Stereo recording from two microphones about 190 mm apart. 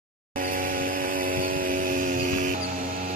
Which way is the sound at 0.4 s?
45° right (ahead or behind).